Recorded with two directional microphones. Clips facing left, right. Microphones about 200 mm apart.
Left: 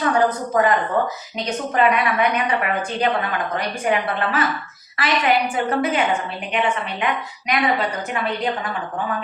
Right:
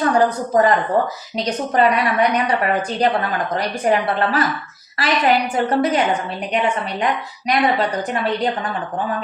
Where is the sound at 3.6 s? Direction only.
35° right (ahead or behind).